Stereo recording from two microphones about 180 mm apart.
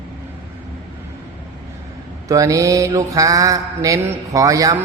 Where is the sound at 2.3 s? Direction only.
15° right (ahead or behind).